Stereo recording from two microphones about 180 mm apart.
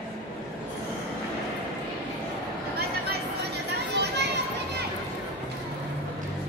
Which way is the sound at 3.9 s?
70° right (ahead or behind).